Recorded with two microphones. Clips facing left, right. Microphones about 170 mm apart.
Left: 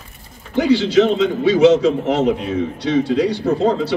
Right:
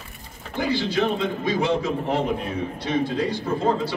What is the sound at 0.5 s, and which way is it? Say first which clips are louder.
A man's voice: left 10 dB; 80° left.